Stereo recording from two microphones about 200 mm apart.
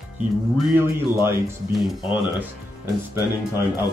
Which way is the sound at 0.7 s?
10° right (ahead or behind).